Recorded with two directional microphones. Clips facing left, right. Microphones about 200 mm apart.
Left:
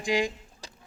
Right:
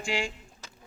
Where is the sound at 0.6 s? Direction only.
35° left (ahead or behind).